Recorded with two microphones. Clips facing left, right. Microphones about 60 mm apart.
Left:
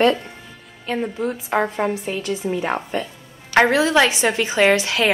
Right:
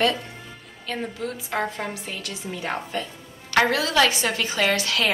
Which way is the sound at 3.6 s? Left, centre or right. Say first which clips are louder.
Left 5 dB; left.